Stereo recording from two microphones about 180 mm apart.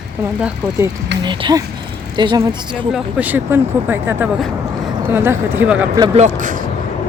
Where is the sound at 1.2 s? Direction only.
25° right (ahead or behind).